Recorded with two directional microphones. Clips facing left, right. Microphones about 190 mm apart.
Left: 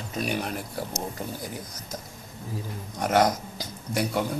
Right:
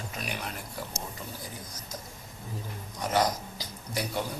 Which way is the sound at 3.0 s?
55° left (ahead or behind).